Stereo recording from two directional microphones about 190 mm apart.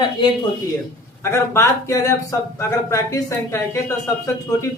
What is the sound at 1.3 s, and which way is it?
Speech, 15° left (ahead or behind).